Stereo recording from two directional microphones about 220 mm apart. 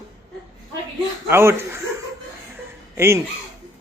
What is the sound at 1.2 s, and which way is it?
Speech, 10° right (ahead or behind).